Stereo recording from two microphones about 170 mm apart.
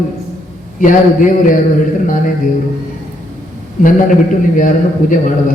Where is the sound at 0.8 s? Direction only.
50° left (ahead or behind).